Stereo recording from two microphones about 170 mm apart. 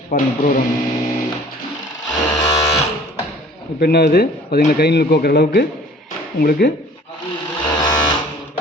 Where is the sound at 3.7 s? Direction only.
70° left (ahead or behind).